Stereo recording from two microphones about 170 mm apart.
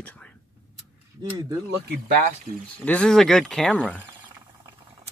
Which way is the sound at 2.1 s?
50° right (ahead or behind).